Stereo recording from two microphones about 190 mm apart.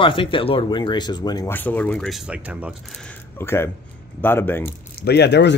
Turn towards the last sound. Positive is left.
turn(degrees=65)  # may be behind; listen again after turning